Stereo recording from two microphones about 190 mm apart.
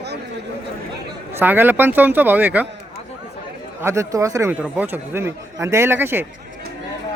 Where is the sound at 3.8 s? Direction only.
15° right (ahead or behind).